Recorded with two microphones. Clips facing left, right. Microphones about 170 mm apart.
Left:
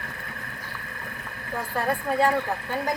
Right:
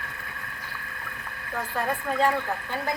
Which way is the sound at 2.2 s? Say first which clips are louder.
Even; 10° left (ahead or behind).